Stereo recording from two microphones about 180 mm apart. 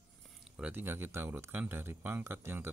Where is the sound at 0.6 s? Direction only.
10° right (ahead or behind).